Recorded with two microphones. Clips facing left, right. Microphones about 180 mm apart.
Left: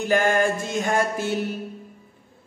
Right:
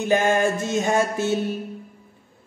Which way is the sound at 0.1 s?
20° right (ahead or behind).